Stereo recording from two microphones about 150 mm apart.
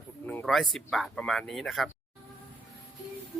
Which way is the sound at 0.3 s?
5° left (ahead or behind).